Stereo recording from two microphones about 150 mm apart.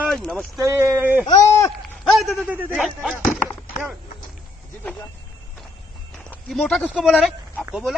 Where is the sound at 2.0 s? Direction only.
Centre (ahead or behind).